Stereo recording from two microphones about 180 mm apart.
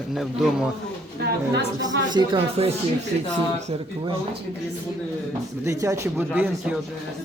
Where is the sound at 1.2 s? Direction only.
65° right (ahead or behind).